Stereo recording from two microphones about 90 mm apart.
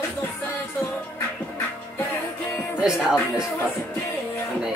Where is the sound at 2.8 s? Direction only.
5° right (ahead or behind).